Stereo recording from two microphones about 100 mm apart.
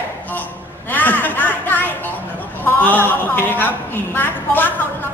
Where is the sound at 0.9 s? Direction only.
20° left (ahead or behind).